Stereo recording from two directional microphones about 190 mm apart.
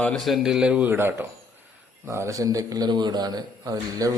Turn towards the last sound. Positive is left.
turn(degrees=-20)  # may be behind; listen again after turning